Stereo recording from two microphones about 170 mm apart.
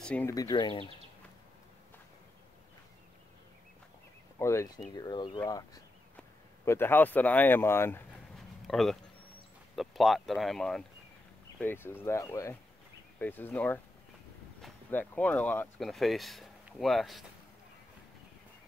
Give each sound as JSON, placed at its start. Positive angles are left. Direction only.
{"t": 0.0, "sound": "speech", "side_deg": 5}
{"t": 0.3, "sound": "speech", "side_deg": 20}
{"t": 4.4, "sound": "speech", "side_deg": 15}
{"t": 8.6, "sound": "speech", "side_deg": 0}
{"t": 11.6, "sound": "speech", "side_deg": 10}
{"t": 14.9, "sound": "speech", "side_deg": 10}